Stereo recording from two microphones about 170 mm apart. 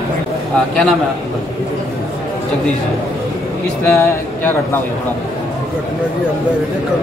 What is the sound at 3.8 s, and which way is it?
Speech, 15° left (ahead or behind).